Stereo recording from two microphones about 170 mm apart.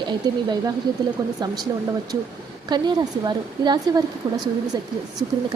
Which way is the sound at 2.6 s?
25° right (ahead or behind).